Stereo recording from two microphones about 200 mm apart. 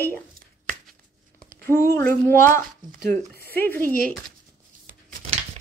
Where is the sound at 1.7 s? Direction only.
15° left (ahead or behind).